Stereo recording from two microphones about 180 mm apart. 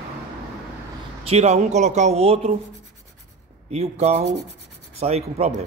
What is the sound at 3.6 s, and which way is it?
Speech, 35° right (ahead or behind).